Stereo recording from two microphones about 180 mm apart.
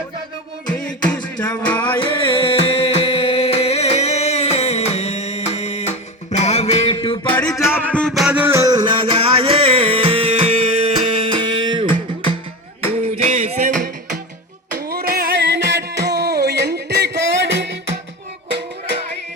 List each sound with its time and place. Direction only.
0.8 s music: 5° left (ahead or behind)
2.2 s music: 25° left (ahead or behind)
7.3 s music: 15° left (ahead or behind); by 11.9 s 25° right (ahead or behind)
13.0 s music: 40° right (ahead or behind)
14.8 s music: 55° right (ahead or behind); by 17.7 s 75° right (ahead or behind)